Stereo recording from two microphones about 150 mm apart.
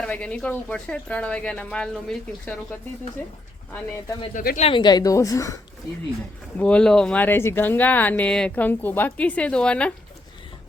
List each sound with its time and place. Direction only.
0.0 s speech: 10° left (ahead or behind)
4.4 s speech: 55° left (ahead or behind)
4.7 s a woman's voice: 30° left (ahead or behind)
6.6 s speech: 5° left (ahead or behind)